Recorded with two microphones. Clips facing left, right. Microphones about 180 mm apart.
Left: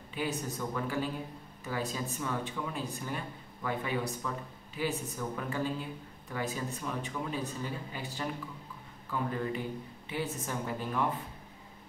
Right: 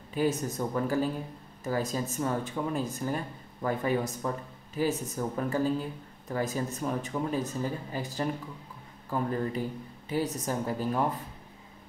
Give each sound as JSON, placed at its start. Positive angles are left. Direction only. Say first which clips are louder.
{"t": 0.1, "sound": "speech", "louder": "right 7 dB", "side_deg": -45}